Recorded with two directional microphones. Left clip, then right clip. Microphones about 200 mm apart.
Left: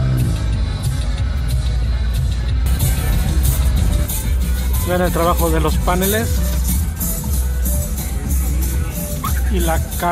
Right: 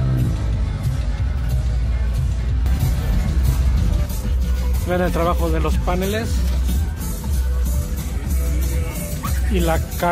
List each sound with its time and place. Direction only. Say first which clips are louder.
4.8 s speech: left 3 dB; 5° right (ahead or behind)
9.5 s speech: right 1 dB; 15° right (ahead or behind)